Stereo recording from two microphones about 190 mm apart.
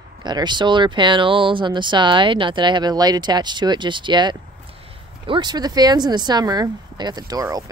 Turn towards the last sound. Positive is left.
turn(degrees=-20)  # may be behind; listen again after turning